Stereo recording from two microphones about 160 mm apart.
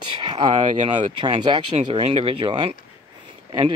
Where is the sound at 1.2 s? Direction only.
30° right (ahead or behind).